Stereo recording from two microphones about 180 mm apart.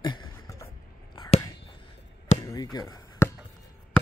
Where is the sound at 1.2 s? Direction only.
25° left (ahead or behind).